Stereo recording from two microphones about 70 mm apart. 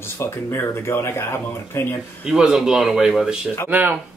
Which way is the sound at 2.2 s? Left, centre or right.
Centre.